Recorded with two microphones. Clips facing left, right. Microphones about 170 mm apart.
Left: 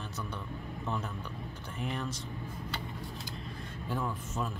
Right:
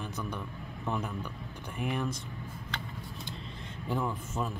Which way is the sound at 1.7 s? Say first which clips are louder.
Right 4 dB; 10° right (ahead or behind).